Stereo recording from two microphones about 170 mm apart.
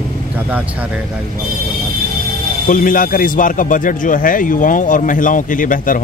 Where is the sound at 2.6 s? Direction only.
55° left (ahead or behind).